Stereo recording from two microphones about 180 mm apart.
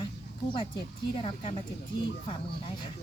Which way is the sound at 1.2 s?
30° left (ahead or behind).